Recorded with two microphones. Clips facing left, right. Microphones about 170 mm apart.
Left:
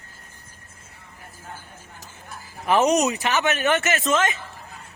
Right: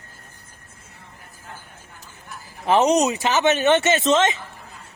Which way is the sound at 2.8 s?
25° right (ahead or behind).